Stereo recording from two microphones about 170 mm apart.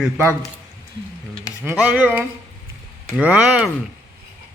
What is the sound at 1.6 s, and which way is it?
Speech, 5° right (ahead or behind).